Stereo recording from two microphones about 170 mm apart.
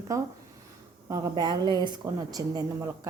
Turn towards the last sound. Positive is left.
turn(degrees=-20)  # may be behind; listen again after turning